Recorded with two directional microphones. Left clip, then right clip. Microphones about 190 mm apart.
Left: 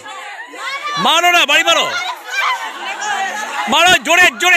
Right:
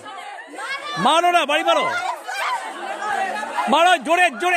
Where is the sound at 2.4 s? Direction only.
40° right (ahead or behind).